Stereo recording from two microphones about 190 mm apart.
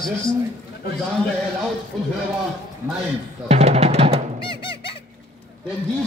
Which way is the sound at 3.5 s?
35° right (ahead or behind).